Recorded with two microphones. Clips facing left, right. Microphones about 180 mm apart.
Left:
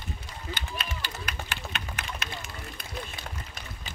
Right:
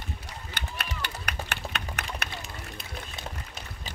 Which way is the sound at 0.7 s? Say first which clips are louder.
Even; 65° right (ahead or behind).